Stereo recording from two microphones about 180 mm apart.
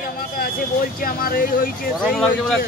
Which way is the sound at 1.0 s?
55° left (ahead or behind).